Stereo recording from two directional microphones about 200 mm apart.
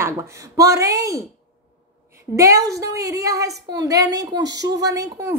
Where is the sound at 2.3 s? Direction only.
15° right (ahead or behind).